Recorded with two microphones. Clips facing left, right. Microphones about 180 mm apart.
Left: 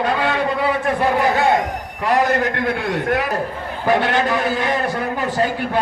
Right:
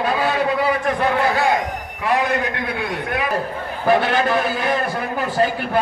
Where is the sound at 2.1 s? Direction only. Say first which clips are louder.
Left 3 dB; 45° left (ahead or behind).